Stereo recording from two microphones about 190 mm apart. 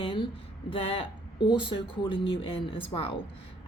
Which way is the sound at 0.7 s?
30° left (ahead or behind).